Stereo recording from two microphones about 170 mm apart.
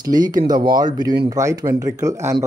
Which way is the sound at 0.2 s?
25° right (ahead or behind).